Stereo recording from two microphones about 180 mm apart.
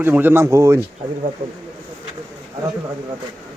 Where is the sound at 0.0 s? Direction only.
10° right (ahead or behind).